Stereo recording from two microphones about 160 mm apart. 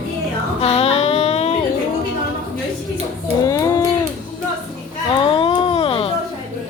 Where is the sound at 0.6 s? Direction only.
40° left (ahead or behind).